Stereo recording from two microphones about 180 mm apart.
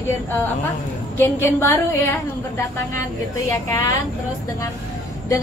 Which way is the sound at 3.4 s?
20° left (ahead or behind).